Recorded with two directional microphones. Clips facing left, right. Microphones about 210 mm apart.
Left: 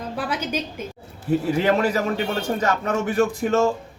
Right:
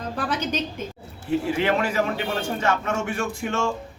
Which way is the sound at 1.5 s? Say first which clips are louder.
Left 4 dB; 40° left (ahead or behind).